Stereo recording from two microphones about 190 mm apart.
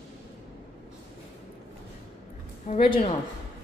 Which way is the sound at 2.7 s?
35° left (ahead or behind).